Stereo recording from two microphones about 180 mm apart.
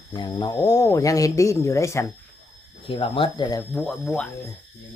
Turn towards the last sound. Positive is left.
turn(degrees=0)  # may be behind; listen again after turning